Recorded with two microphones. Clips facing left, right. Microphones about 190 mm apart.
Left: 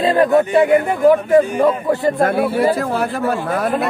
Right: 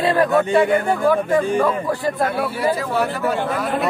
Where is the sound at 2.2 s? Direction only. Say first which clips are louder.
Left 6 dB; 50° left (ahead or behind).